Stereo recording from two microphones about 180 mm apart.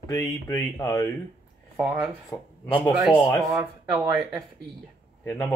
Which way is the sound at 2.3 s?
10° left (ahead or behind).